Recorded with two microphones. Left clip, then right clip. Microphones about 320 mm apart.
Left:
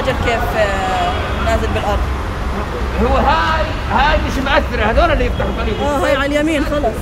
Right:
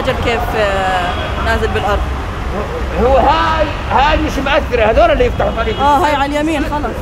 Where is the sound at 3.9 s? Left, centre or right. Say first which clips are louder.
Right 2 dB; right.